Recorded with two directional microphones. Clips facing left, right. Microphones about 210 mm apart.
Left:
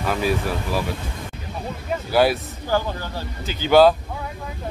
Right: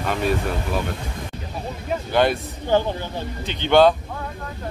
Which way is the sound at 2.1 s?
5° left (ahead or behind).